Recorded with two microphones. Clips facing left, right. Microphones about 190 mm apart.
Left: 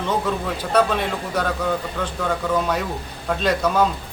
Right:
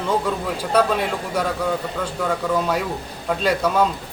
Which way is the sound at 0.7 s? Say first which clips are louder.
Even; 10° right (ahead or behind).